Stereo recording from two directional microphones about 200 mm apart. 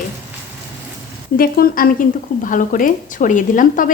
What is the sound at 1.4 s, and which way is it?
A woman's voice, 45° left (ahead or behind).